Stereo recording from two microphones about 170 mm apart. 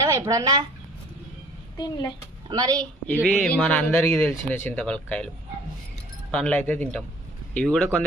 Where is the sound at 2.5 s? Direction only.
25° right (ahead or behind).